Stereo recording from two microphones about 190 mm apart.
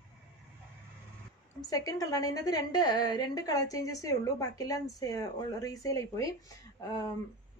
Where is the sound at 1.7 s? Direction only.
20° left (ahead or behind).